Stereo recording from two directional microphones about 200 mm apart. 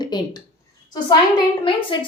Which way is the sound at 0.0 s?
20° left (ahead or behind).